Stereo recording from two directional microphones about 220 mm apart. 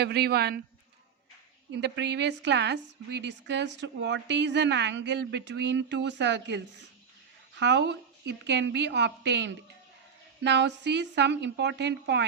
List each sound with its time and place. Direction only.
0.0 s a woman's voice: 45° right (ahead or behind)
1.7 s a woman's voice: 50° right (ahead or behind)